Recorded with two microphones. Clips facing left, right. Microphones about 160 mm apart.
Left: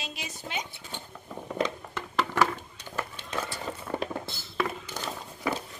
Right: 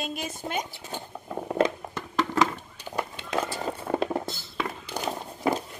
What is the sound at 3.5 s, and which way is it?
Patter, 40° right (ahead or behind).